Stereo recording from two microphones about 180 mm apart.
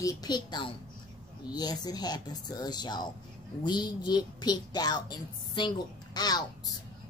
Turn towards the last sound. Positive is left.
turn(degrees=20)  # may be behind; listen again after turning